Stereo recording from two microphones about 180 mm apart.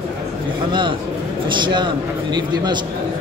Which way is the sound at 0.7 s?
25° right (ahead or behind).